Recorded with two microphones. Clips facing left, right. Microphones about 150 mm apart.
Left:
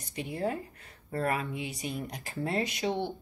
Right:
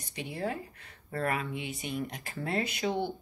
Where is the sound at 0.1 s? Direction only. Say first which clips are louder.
Left 2 dB; 40° left (ahead or behind).